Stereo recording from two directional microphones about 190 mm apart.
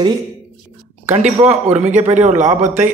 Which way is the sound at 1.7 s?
40° right (ahead or behind).